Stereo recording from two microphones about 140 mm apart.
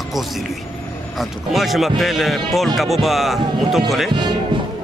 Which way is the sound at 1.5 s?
Centre (ahead or behind).